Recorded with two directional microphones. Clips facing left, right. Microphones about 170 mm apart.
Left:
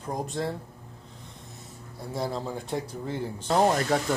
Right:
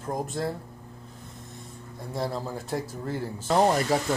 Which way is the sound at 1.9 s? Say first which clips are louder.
Even; centre (ahead or behind).